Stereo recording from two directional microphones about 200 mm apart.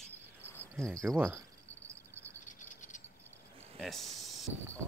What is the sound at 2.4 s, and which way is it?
Cricket, 40° left (ahead or behind).